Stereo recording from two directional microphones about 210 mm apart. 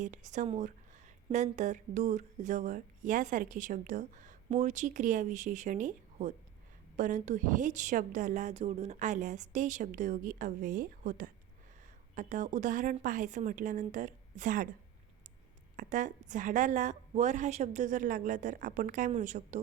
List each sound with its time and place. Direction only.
0.0 s a woman's voice: 35° right (ahead or behind)
15.7 s a woman's voice: 40° right (ahead or behind)